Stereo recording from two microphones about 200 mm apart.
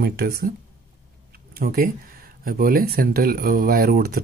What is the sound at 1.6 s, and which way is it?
Speech, 50° right (ahead or behind).